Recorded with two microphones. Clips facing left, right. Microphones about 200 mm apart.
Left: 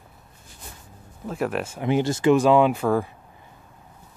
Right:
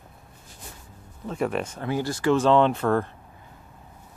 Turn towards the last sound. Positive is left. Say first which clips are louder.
# left 1 dB
turn(degrees=10)  # may be behind; listen again after turning